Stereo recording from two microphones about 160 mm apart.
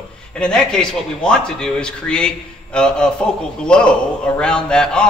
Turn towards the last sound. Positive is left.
turn(degrees=5)  # may be behind; listen again after turning